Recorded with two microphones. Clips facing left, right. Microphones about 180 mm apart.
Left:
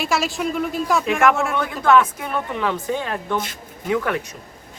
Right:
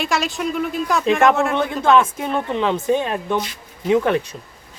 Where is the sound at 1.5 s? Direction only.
25° right (ahead or behind).